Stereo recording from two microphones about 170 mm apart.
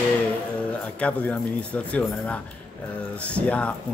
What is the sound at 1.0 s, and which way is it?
Speech, 10° left (ahead or behind).